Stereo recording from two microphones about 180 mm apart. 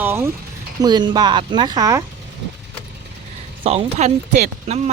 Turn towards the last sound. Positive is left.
turn(degrees=-40)  # may be behind; listen again after turning